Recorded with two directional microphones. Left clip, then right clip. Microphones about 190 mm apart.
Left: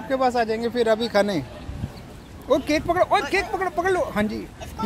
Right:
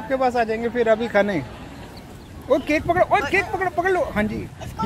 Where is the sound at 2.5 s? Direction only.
15° left (ahead or behind).